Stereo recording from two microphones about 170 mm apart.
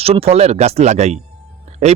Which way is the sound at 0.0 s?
35° right (ahead or behind).